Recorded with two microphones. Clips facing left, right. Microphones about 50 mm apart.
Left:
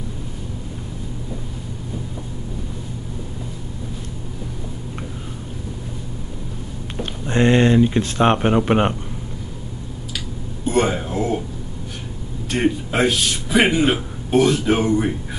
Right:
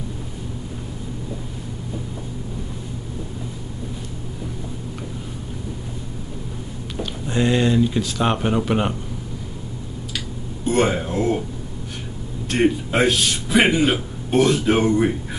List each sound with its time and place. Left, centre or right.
7.0 s speech: left
10.6 s a sound: centre
12.4 s a man's voice: centre
13.7 s speech: centre